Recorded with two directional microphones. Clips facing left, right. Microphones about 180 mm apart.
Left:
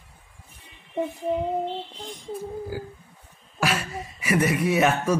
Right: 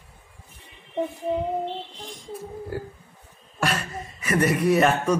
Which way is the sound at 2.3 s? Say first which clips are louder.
Left 2 dB; centre (ahead or behind).